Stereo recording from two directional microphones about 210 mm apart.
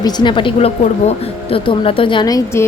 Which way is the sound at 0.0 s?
20° left (ahead or behind).